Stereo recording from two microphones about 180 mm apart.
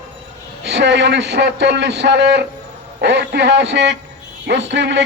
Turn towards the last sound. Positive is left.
turn(degrees=-75)  # may be behind; listen again after turning